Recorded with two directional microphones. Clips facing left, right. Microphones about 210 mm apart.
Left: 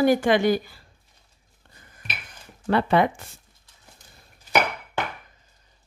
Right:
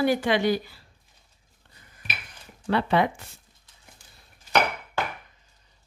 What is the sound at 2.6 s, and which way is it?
Speech, 50° left (ahead or behind).